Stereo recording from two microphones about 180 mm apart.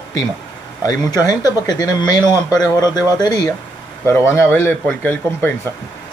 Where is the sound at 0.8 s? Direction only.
20° left (ahead or behind).